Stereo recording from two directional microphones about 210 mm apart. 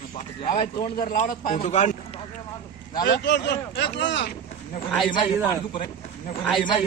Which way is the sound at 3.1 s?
55° left (ahead or behind).